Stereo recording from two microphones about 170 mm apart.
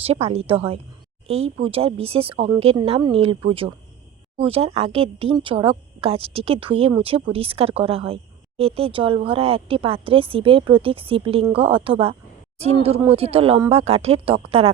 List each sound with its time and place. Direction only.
0.0 s a woman's voice: 35° right (ahead or behind)